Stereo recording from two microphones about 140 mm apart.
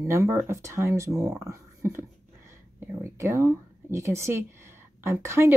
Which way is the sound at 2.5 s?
20° right (ahead or behind).